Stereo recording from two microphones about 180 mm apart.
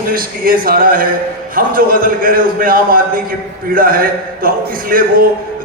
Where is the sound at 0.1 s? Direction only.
55° right (ahead or behind).